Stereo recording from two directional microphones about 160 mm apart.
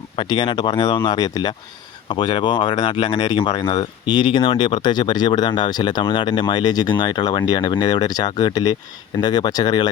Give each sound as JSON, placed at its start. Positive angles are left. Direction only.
{"t": 0.2, "sound": "speech", "side_deg": 30}